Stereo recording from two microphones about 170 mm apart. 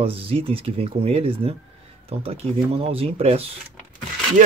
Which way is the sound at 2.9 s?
35° right (ahead or behind).